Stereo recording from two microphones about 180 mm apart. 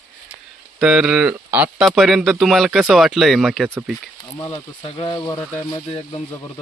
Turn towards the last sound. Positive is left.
turn(degrees=25)  # may be behind; listen again after turning